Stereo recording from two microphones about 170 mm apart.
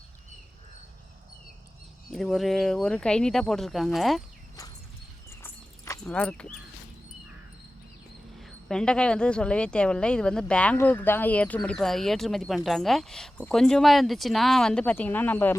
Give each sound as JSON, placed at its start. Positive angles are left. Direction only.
{"t": 2.0, "sound": "a woman's voice", "side_deg": 0}
{"t": 5.4, "sound": "horse", "side_deg": 15}
{"t": 6.1, "sound": "speech", "side_deg": 5}
{"t": 8.4, "sound": "a woman's voice", "side_deg": 0}